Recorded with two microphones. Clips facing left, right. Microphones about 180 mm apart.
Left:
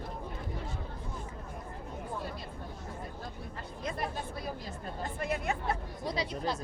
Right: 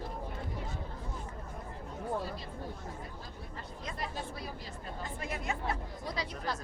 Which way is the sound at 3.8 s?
55° left (ahead or behind).